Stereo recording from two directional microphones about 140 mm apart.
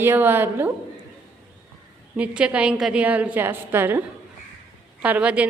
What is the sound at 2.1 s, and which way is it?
A woman's voice, 10° right (ahead or behind).